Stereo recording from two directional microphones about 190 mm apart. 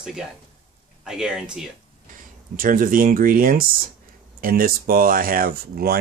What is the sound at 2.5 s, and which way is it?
Speech, 45° right (ahead or behind).